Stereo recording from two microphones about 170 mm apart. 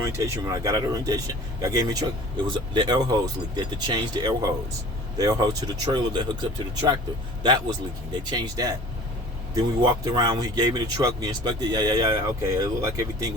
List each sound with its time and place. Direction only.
0.0 s speech: 20° right (ahead or behind)
7.4 s speech: 25° right (ahead or behind)